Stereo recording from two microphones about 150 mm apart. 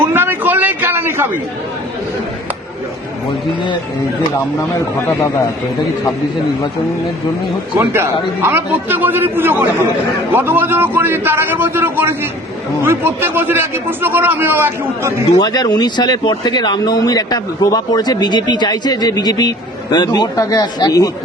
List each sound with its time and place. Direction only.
0.0 s a sound: 15° right (ahead or behind)
7.8 s a man's voice: 15° right (ahead or behind)
15.4 s speech: 25° left (ahead or behind)